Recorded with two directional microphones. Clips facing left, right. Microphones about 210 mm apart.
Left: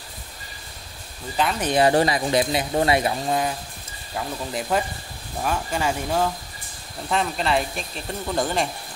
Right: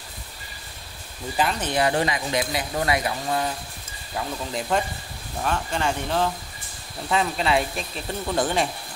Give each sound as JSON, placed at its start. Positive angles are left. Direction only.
{"t": 1.3, "sound": "speech", "side_deg": -5}
{"t": 1.8, "sound": "speech", "side_deg": 35}
{"t": 4.1, "sound": "speech", "side_deg": 0}